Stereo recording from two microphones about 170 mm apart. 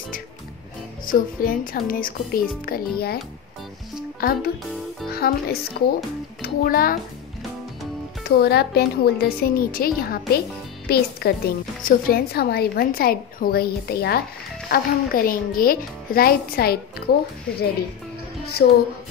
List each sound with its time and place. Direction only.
1.0 s speech: 55° left (ahead or behind)
4.2 s a woman's voice: 60° left (ahead or behind)
8.3 s a woman's voice: 70° left (ahead or behind)
18.6 s a woman's voice: 65° left (ahead or behind)